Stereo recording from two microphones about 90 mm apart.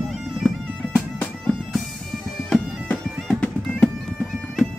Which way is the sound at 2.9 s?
15° left (ahead or behind).